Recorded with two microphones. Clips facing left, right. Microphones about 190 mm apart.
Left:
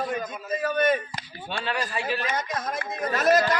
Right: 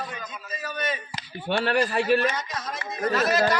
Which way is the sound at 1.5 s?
65° right (ahead or behind).